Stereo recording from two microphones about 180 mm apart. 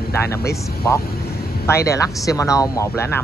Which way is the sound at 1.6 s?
15° left (ahead or behind).